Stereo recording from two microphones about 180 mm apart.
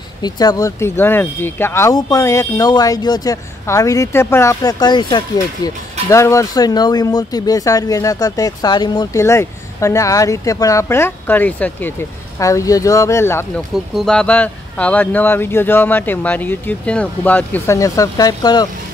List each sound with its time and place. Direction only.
0.2 s speech: 20° left (ahead or behind)
13.9 s speech: 5° left (ahead or behind); by 18.7 s 25° left (ahead or behind)